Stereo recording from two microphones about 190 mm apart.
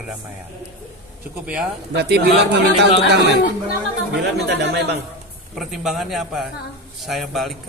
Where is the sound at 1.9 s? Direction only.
60° right (ahead or behind).